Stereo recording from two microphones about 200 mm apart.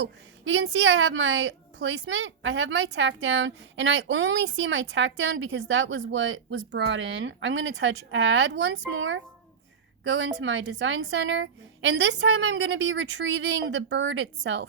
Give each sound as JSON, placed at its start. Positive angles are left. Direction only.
{"t": 0.0, "sound": "a woman's voice", "side_deg": -65}